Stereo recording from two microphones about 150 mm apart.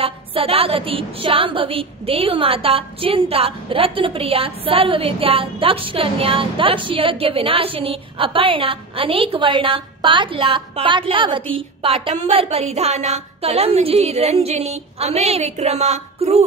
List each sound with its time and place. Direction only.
0.0 s a woman's voice: 40° right (ahead or behind)